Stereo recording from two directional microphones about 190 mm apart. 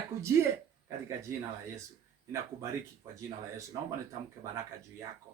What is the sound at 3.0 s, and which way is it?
Speech, 20° right (ahead or behind).